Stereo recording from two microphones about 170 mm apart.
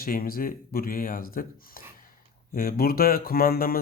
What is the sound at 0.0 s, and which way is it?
Speech, 60° left (ahead or behind).